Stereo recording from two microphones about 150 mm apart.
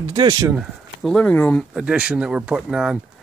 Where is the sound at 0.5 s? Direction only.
Centre (ahead or behind).